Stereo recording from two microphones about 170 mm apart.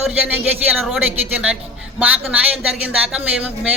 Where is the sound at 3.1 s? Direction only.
5° right (ahead or behind).